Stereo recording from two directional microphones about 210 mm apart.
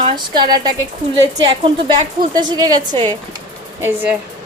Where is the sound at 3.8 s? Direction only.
10° right (ahead or behind).